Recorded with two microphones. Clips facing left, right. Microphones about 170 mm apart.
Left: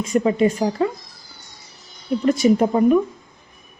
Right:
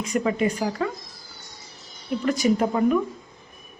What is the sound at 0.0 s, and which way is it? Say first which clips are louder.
Speech: left 5 dB; 25° left (ahead or behind).